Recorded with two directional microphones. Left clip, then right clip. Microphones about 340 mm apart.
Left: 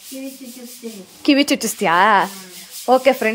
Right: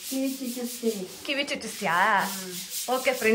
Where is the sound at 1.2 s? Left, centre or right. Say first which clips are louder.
Left 13 dB; centre.